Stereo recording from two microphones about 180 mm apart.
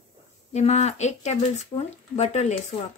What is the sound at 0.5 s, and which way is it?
Speech, 40° left (ahead or behind).